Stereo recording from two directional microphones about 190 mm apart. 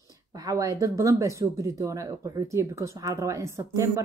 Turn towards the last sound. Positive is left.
turn(degrees=-15)  # may be behind; listen again after turning